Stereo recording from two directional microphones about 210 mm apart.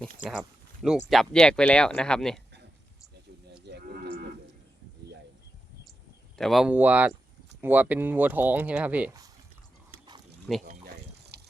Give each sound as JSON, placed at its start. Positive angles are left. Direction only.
{"t": 0.0, "sound": "a sound", "side_deg": -5}
{"t": 1.1, "sound": "speech", "side_deg": 0}
{"t": 3.7, "sound": "cattle", "side_deg": -50}
{"t": 6.3, "sound": "speech", "side_deg": 0}
{"t": 10.5, "sound": "speech", "side_deg": 0}
{"t": 11.3, "sound": "a sound", "side_deg": -50}